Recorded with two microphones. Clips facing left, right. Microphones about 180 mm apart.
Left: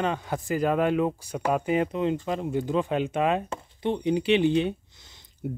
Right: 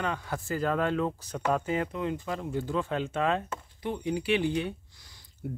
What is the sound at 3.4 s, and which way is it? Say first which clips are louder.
Speech: left 6 dB; 25° left (ahead or behind).